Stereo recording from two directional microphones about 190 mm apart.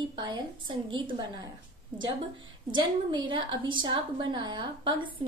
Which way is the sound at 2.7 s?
25° right (ahead or behind).